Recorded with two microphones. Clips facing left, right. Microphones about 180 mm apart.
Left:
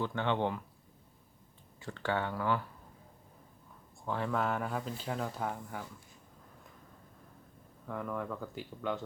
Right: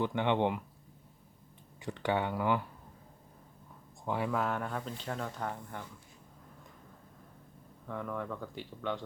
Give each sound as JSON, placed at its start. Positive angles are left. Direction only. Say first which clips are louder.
{"t": 0.0, "sound": "speech", "louder": "right 3 dB", "side_deg": -15}
{"t": 1.8, "sound": "speech", "louder": "right 2 dB", "side_deg": -15}
{"t": 4.0, "sound": "speech", "louder": "right 2 dB", "side_deg": -15}
{"t": 4.3, "sound": "speech", "louder": "even", "side_deg": 0}
{"t": 7.9, "sound": "speech", "louder": "even", "side_deg": 0}